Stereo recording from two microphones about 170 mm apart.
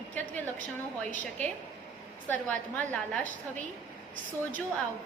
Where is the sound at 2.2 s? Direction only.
10° left (ahead or behind).